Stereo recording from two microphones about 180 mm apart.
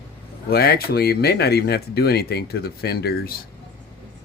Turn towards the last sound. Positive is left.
turn(degrees=60)  # may be behind; listen again after turning